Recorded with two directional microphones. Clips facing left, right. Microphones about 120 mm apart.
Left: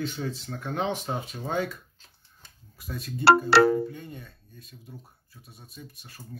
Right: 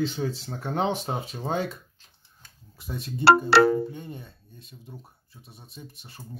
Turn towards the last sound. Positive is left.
turn(degrees=-25)  # may be behind; listen again after turning